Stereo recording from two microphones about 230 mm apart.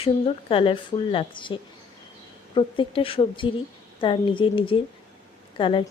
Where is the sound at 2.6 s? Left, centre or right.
Left.